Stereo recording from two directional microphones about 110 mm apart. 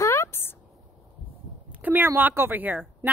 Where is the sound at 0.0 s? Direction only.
25° left (ahead or behind).